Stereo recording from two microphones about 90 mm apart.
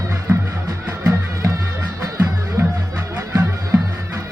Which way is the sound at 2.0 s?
35° right (ahead or behind).